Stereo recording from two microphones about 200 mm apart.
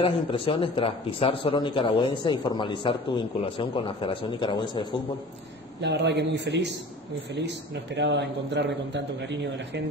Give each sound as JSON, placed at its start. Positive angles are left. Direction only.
{"t": 0.0, "sound": "a man's voice", "side_deg": 25}
{"t": 5.8, "sound": "a man's voice", "side_deg": -60}